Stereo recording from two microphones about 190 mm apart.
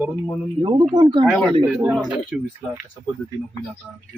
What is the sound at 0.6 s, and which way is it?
Speech, 25° right (ahead or behind).